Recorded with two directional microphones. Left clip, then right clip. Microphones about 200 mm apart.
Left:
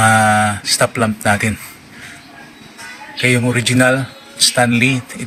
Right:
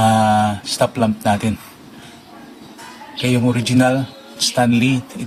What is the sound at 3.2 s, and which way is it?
Speech, 10° right (ahead or behind).